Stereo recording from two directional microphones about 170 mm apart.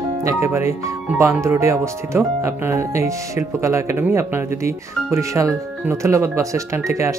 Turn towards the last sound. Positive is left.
turn(degrees=-15)  # may be behind; listen again after turning